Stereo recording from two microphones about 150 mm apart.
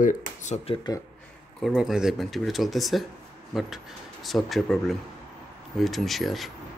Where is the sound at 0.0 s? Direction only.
60° left (ahead or behind).